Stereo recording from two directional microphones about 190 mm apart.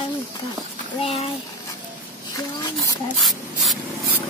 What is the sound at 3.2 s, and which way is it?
Speech, centre (ahead or behind).